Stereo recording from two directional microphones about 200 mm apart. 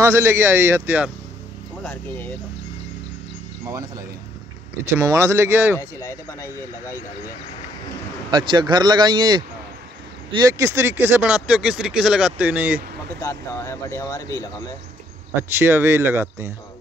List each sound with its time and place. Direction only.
0.0 s speech: 15° right (ahead or behind)
1.8 s speech: 5° left (ahead or behind)
3.6 s speech: 15° right (ahead or behind)
5.8 s speech: 15° left (ahead or behind)
8.3 s speech: 20° right (ahead or behind)
13.2 s speech: 15° left (ahead or behind)
15.5 s speech: 10° right (ahead or behind)